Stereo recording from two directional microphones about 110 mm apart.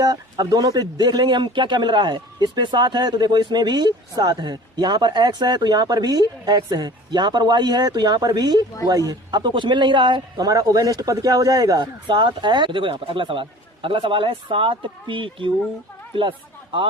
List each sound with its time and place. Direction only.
0.0 s a man's voice: 35° right (ahead or behind)